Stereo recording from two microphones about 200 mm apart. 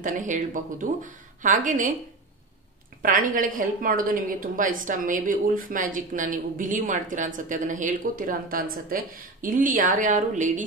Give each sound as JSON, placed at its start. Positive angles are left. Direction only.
{"t": 0.0, "sound": "a woman's voice", "side_deg": -40}
{"t": 3.0, "sound": "a woman's voice", "side_deg": -45}